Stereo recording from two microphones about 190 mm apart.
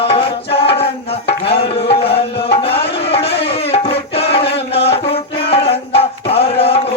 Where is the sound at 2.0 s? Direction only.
30° left (ahead or behind).